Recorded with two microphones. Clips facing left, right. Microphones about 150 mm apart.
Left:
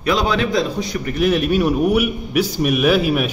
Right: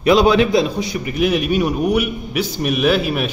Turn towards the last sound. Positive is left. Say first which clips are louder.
# left 1 dB
turn(degrees=5)  # may be behind; listen again after turning